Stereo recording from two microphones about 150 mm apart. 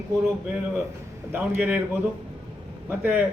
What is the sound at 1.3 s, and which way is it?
Speech, 10° right (ahead or behind).